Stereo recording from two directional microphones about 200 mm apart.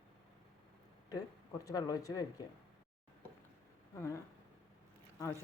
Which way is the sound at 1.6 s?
15° left (ahead or behind).